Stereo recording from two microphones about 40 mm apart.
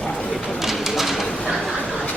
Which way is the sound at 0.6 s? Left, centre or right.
Centre.